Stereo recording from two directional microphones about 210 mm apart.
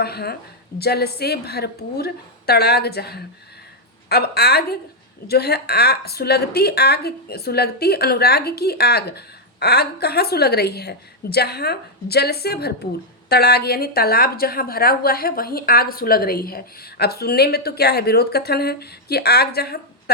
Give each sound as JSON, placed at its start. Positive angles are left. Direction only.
{"t": 0.0, "sound": "speech", "side_deg": 50}